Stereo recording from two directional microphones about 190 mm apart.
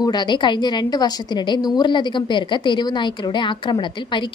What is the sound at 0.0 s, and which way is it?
A woman's voice, 25° left (ahead or behind).